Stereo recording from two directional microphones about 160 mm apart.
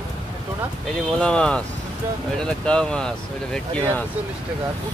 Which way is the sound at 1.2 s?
5° left (ahead or behind).